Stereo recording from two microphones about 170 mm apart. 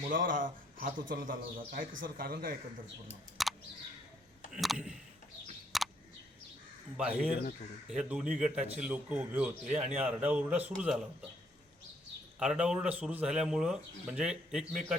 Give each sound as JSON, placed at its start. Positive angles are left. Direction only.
{"t": 0.1, "sound": "a man's voice", "side_deg": -55}
{"t": 3.4, "sound": "bird", "side_deg": 0}
{"t": 4.5, "sound": "a sound", "side_deg": 0}
{"t": 6.9, "sound": "a man's voice", "side_deg": -5}
{"t": 12.4, "sound": "speech", "side_deg": -5}